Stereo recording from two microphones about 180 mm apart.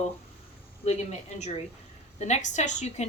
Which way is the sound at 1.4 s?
40° left (ahead or behind).